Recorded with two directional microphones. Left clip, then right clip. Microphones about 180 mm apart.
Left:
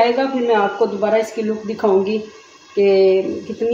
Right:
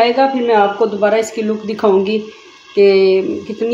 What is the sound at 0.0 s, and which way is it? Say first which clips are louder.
Speech: right 4 dB; 30° right (ahead or behind).